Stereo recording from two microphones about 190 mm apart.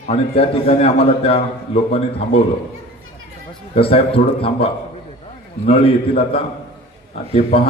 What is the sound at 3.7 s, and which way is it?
A man's voice, 30° left (ahead or behind).